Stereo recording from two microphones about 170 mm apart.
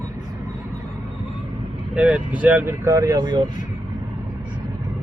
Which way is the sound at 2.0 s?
5° right (ahead or behind).